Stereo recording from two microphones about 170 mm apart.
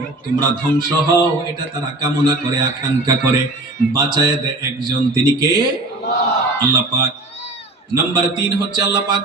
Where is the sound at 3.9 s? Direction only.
25° right (ahead or behind).